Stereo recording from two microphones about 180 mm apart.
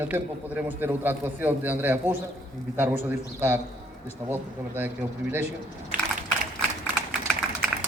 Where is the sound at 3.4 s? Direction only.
10° right (ahead or behind).